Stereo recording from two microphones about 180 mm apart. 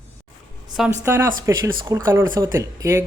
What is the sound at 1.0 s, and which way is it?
Speech, 15° right (ahead or behind).